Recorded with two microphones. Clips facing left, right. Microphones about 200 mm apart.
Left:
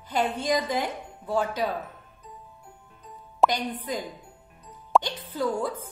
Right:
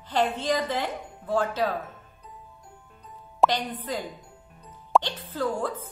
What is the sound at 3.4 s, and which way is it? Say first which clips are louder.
Speech: even; 10° left (ahead or behind).